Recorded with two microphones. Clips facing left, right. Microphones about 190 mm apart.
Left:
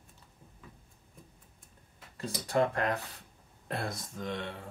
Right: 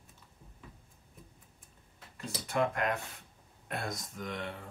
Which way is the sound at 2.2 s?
35° left (ahead or behind).